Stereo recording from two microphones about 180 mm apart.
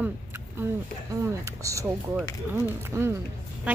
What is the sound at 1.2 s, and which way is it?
A woman's voice, 15° right (ahead or behind).